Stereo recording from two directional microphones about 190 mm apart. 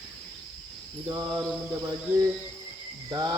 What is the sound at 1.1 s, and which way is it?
Cricket, 20° right (ahead or behind).